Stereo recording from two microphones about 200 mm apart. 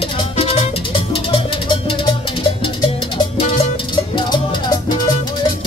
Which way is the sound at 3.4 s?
30° left (ahead or behind).